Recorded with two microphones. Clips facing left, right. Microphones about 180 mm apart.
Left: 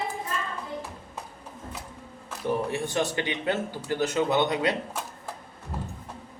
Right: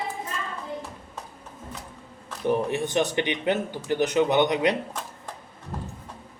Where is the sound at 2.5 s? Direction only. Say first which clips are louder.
Right 3 dB; 20° right (ahead or behind).